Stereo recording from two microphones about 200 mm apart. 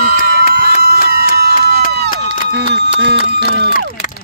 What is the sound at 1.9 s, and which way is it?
Run, 55° right (ahead or behind).